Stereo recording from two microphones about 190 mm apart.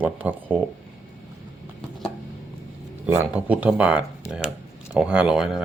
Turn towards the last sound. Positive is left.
turn(degrees=-5)  # may be behind; listen again after turning